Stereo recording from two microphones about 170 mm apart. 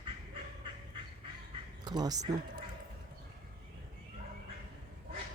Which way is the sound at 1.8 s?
25° right (ahead or behind).